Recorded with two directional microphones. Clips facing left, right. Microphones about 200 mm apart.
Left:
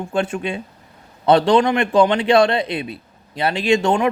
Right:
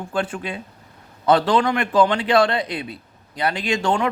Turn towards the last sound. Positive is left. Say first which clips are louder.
# left 5 dB
turn(degrees=25)  # may be behind; listen again after turning